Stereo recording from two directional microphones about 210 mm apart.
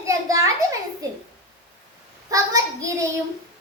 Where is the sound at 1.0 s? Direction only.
15° right (ahead or behind).